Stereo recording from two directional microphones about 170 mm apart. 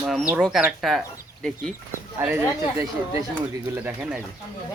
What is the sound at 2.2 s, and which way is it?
Speech, 10° right (ahead or behind).